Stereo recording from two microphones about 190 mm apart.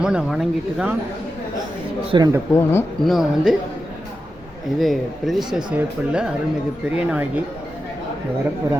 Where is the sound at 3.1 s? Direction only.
Centre (ahead or behind).